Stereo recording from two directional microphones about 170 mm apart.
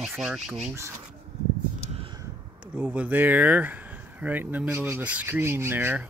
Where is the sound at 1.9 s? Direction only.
30° right (ahead or behind).